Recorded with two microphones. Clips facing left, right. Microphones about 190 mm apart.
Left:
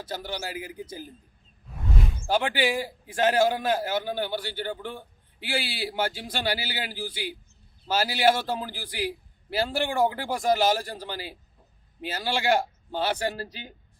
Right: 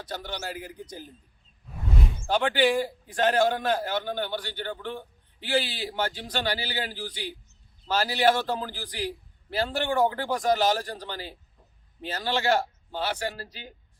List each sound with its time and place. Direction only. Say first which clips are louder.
0.0 s a man's voice: left 1 dB; 10° left (ahead or behind)
2.3 s a man's voice: right 2 dB; 10° left (ahead or behind)